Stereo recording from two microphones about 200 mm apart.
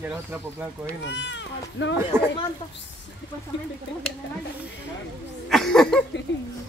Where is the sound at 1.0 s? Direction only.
65° left (ahead or behind).